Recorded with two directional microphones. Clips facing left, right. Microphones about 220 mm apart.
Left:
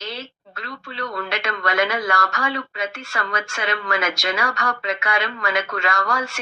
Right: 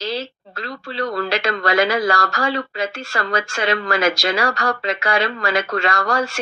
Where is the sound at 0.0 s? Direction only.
35° right (ahead or behind).